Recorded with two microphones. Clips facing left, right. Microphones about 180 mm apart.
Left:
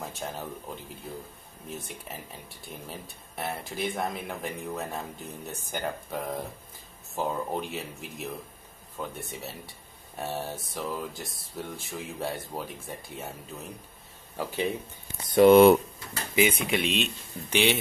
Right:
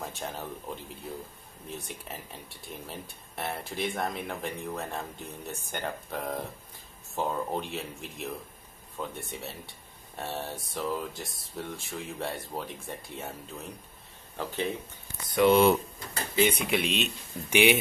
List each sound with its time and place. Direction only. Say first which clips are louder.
0.0 s speech: left 1 dB; centre (ahead or behind)
1.7 s speech: left 1 dB; centre (ahead or behind)
14.3 s speech: left 2 dB; 10° left (ahead or behind)
15.3 s speech: left 6 dB; 50° left (ahead or behind)
16.3 s speech: left 1 dB; 5° left (ahead or behind)